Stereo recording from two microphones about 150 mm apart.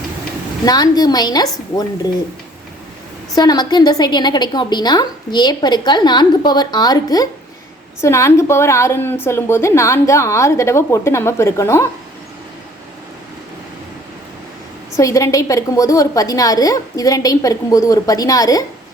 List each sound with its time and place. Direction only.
0.6 s a woman's voice: 25° left (ahead or behind)
3.3 s a woman's voice: 30° left (ahead or behind)
14.9 s a woman's voice: 20° left (ahead or behind)